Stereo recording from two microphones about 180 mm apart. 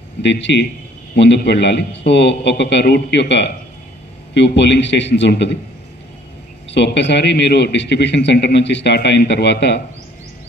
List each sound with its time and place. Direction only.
0.2 s a man's voice: 75° left (ahead or behind)
6.7 s a man's voice: 75° left (ahead or behind)